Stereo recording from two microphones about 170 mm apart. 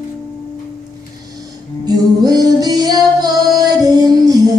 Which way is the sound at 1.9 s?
20° right (ahead or behind).